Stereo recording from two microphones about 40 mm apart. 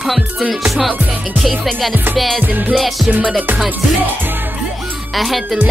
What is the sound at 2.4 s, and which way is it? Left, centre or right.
Music, right.